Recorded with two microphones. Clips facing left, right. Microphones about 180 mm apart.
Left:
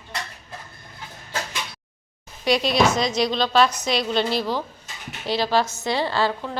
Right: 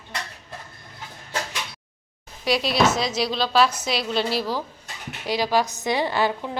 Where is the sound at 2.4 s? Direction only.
Centre (ahead or behind).